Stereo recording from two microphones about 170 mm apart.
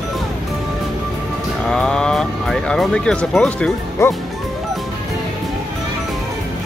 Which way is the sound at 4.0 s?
15° left (ahead or behind).